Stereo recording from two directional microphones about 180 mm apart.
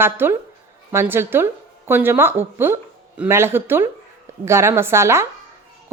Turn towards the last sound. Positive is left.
turn(degrees=-15)  # may be behind; listen again after turning